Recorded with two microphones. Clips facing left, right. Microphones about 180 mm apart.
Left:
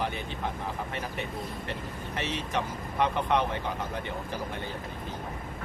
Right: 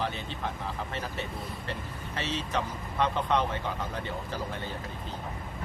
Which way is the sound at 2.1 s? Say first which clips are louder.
Even; 15° left (ahead or behind).